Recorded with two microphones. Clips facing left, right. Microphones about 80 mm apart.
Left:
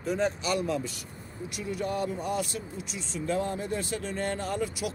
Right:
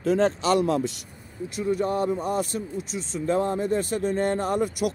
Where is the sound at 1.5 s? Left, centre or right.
Right.